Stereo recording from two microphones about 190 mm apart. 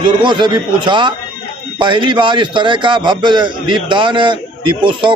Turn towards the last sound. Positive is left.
turn(degrees=-25)  # may be behind; listen again after turning